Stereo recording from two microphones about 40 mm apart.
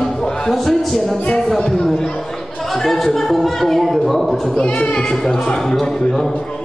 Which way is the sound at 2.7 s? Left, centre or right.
Centre.